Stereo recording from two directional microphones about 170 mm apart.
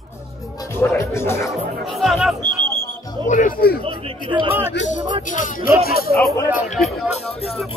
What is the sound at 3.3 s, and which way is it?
Speech, 50° left (ahead or behind).